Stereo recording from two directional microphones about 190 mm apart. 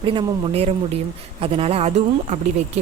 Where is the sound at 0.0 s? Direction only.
30° right (ahead or behind).